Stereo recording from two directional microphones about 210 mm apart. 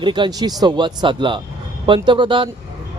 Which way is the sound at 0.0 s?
20° right (ahead or behind).